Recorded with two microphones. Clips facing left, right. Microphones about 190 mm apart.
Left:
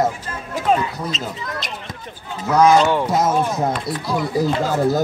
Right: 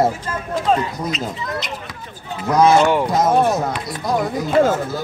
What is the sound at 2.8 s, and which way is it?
Speech, 15° right (ahead or behind).